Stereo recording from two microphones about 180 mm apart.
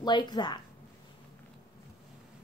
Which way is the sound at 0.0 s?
25° left (ahead or behind).